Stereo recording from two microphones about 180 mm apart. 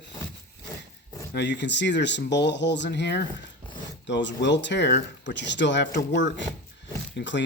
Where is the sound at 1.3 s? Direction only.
70° left (ahead or behind).